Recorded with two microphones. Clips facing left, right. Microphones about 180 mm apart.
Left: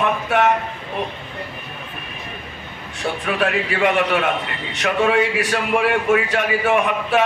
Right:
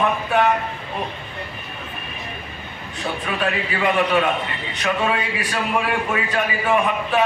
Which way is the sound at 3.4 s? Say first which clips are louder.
Left 3 dB; 70° left (ahead or behind).